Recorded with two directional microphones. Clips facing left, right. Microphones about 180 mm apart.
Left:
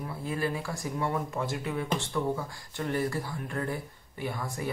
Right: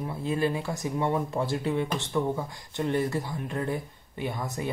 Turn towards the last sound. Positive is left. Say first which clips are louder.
# right 2 dB
turn(degrees=-20)  # may be behind; listen again after turning